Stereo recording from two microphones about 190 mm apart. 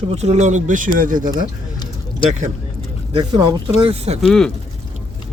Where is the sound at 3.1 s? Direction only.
25° right (ahead or behind).